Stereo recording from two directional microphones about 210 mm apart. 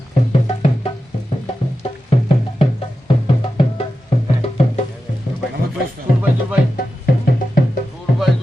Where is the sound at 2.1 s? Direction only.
25° left (ahead or behind).